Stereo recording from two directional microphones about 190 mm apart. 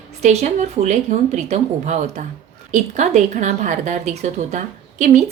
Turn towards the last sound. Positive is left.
turn(degrees=-40)  # may be behind; listen again after turning